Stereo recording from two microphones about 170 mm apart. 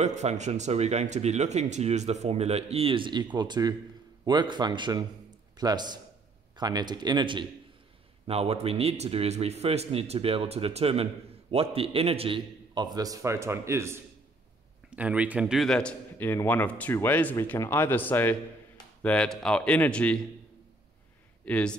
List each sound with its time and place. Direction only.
0.0 s a man's voice: 40° right (ahead or behind); by 20.2 s 5° left (ahead or behind)
21.5 s a man's voice: 5° left (ahead or behind)